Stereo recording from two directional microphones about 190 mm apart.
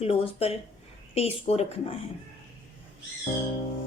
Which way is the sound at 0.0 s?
30° left (ahead or behind).